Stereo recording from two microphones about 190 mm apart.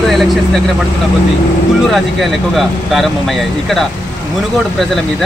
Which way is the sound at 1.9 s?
Centre (ahead or behind).